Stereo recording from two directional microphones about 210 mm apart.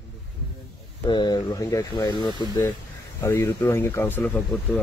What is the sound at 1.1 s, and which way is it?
Speech, 20° left (ahead or behind).